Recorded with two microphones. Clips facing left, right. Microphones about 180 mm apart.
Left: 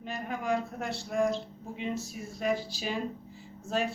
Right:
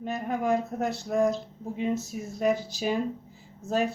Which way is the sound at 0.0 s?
45° right (ahead or behind).